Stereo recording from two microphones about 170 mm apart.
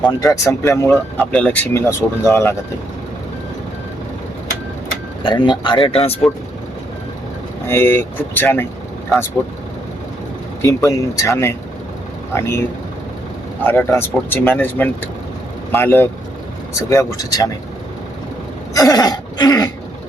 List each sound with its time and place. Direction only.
0.2 s speech: 20° left (ahead or behind)
5.2 s speech: 25° left (ahead or behind)
7.7 s speech: 10° left (ahead or behind)
10.6 s speech: 20° left (ahead or behind)
13.7 s speech: 15° left (ahead or behind)
18.7 s a sound: 20° left (ahead or behind)